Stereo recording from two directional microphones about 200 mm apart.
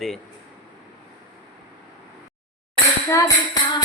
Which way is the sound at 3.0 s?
15° left (ahead or behind).